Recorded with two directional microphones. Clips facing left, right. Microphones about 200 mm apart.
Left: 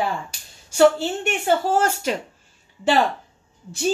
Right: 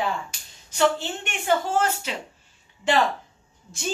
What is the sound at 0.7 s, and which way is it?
A woman's voice, 40° left (ahead or behind).